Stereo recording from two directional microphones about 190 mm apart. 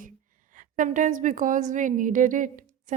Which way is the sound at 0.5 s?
45° right (ahead or behind).